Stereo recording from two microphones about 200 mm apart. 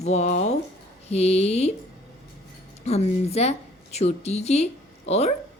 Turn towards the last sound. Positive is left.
turn(degrees=30)  # may be behind; listen again after turning